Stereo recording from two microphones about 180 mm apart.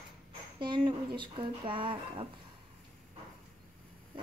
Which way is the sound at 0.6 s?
25° right (ahead or behind).